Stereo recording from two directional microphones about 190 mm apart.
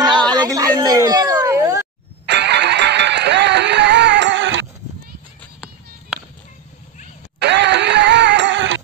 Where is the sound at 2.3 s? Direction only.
65° right (ahead or behind).